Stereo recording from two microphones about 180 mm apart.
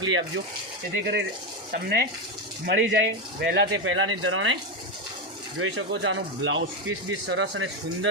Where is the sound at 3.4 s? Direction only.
70° right (ahead or behind); by 4.6 s 90° right.